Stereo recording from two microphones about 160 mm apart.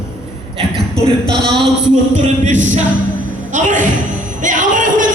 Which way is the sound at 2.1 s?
50° right (ahead or behind).